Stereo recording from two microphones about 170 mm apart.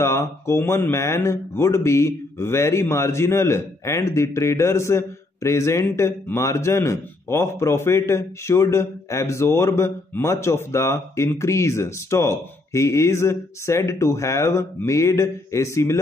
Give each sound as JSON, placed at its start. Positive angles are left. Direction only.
{"t": 0.0, "sound": "speech", "side_deg": 15}